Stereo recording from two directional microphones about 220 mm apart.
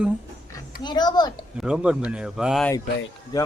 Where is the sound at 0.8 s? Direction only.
20° left (ahead or behind).